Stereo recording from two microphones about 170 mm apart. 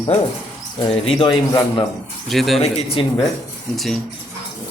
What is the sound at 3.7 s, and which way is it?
Speech, centre (ahead or behind).